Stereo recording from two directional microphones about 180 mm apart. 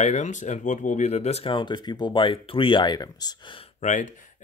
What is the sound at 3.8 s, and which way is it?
Speech, 45° left (ahead or behind).